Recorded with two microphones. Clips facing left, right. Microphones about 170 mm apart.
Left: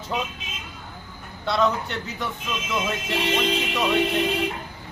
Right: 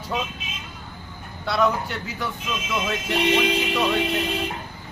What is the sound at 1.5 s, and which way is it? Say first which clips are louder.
Speech: even; centre (ahead or behind).